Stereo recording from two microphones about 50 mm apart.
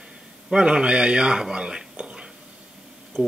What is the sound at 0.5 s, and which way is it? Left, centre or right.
Speech, centre.